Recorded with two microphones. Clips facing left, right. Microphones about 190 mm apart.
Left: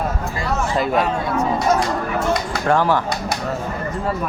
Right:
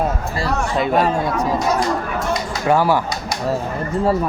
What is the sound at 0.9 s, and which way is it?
Speech, 40° right (ahead or behind).